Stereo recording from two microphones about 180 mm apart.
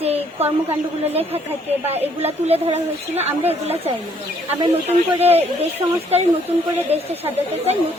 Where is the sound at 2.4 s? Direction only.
35° right (ahead or behind).